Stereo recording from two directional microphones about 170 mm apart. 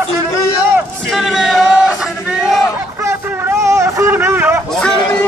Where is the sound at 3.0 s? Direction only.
15° right (ahead or behind).